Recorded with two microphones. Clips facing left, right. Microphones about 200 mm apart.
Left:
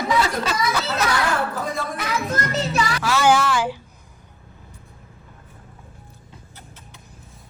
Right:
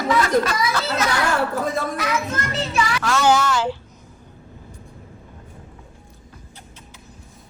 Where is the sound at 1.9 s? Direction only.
35° left (ahead or behind).